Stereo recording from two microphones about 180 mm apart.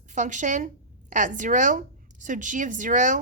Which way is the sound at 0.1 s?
45° right (ahead or behind).